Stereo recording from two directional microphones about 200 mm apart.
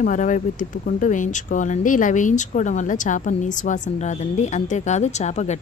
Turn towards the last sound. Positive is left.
turn(degrees=35)  # may be behind; listen again after turning